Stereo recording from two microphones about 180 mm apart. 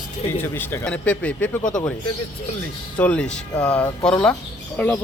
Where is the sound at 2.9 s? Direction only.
5° left (ahead or behind).